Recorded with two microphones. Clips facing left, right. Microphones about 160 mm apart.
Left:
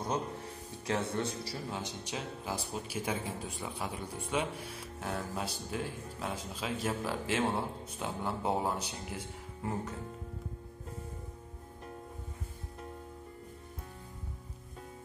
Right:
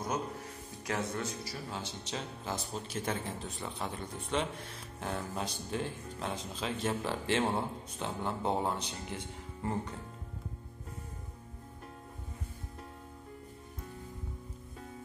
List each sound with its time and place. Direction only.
0.8 s a man's voice: 30° left (ahead or behind)
1.7 s speech: 15° left (ahead or behind)